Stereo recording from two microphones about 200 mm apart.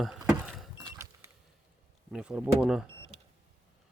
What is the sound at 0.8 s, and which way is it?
Vehicle, 15° right (ahead or behind).